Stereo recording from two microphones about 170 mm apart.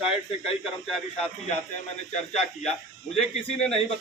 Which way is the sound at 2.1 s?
45° left (ahead or behind).